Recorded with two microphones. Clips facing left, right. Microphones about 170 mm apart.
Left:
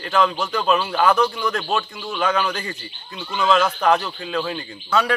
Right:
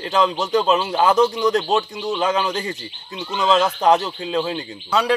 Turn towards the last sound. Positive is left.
turn(degrees=-20)  # may be behind; listen again after turning